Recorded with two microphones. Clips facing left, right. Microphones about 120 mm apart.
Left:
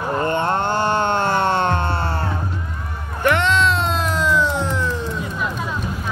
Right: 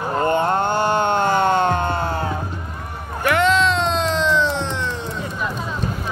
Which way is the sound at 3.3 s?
Centre (ahead or behind).